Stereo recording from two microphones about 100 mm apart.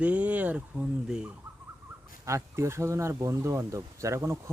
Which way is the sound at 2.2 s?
30° right (ahead or behind).